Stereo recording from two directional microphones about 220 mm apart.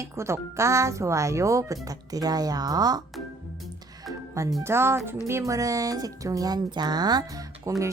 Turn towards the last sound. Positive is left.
turn(degrees=-15)  # may be behind; listen again after turning